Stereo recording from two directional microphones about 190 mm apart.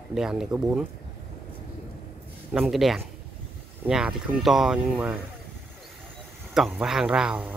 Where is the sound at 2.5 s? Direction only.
Centre (ahead or behind).